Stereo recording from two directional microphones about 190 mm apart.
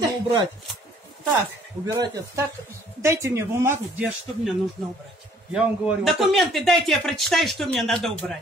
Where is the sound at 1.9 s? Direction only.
15° right (ahead or behind).